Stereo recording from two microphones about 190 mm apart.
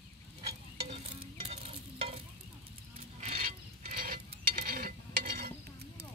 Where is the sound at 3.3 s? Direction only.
50° right (ahead or behind).